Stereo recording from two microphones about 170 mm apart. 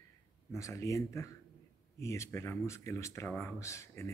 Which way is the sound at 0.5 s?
15° left (ahead or behind).